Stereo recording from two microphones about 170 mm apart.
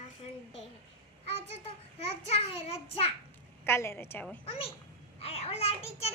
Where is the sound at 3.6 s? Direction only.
15° left (ahead or behind).